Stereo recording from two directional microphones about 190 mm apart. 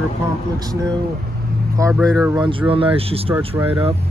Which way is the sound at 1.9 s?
Centre (ahead or behind).